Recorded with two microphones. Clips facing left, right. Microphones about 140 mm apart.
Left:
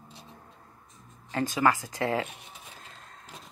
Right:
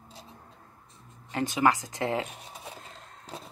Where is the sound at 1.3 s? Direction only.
20° right (ahead or behind).